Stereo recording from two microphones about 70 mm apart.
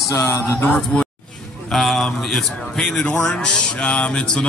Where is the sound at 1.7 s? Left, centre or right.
Centre.